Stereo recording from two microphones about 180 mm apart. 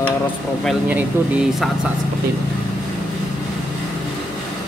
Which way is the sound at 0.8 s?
10° right (ahead or behind).